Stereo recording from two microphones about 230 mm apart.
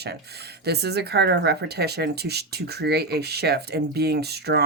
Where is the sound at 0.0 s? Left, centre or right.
Right.